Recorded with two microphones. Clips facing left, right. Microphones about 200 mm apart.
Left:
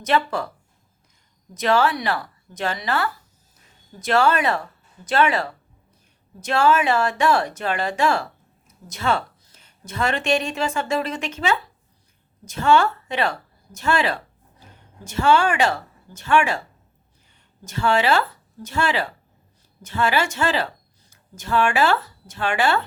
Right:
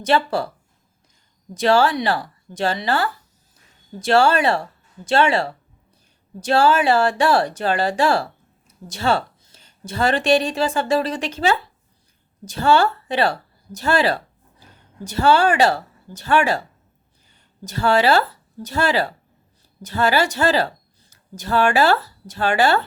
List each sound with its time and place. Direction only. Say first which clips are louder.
0.0 s speech: right 3 dB; 30° right (ahead or behind)
1.5 s speech: right 3 dB; 30° right (ahead or behind)
17.6 s speech: right 3 dB; 35° right (ahead or behind)